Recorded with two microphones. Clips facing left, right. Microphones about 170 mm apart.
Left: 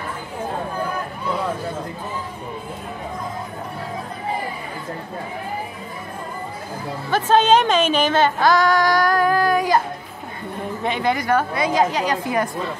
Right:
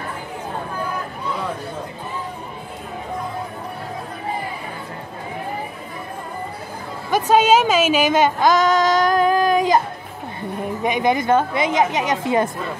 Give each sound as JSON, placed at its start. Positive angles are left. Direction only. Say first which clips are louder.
{"t": 7.1, "sound": "a woman's voice", "louder": "right 1 dB", "side_deg": -10}
{"t": 10.8, "sound": "a woman's voice", "louder": "right 3 dB", "side_deg": -15}